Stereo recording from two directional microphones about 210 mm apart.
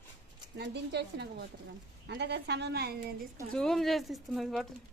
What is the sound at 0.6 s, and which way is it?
A woman's voice, 55° right (ahead or behind).